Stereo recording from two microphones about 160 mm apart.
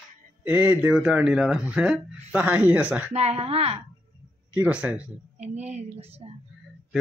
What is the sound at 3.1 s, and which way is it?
Speech, 40° right (ahead or behind).